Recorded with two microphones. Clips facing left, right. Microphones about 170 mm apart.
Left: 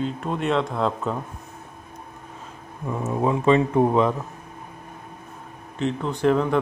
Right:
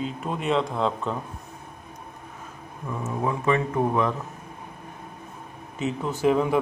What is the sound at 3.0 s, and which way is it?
Speech, 25° left (ahead or behind).